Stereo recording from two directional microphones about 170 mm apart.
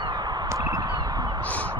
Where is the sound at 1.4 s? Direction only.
10° left (ahead or behind).